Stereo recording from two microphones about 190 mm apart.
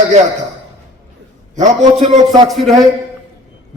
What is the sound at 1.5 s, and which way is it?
Speech, 40° right (ahead or behind).